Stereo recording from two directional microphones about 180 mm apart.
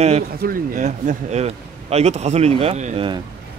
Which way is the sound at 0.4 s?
50° right (ahead or behind).